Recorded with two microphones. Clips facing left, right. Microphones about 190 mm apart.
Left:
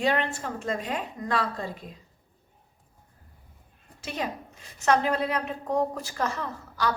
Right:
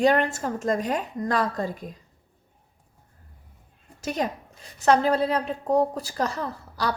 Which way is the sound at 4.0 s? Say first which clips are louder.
Right 5 dB; 40° right (ahead or behind).